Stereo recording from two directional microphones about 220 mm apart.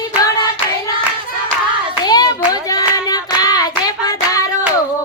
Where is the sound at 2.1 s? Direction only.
15° left (ahead or behind).